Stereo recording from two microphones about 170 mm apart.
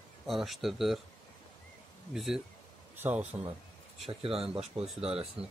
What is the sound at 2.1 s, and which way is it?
Speech, centre (ahead or behind).